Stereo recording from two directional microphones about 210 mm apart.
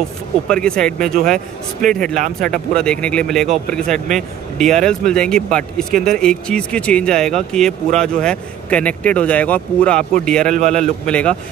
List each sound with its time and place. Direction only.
0.5 s speech: 5° left (ahead or behind)
10.5 s a man's voice: 30° right (ahead or behind)
11.1 s speech: 5° left (ahead or behind)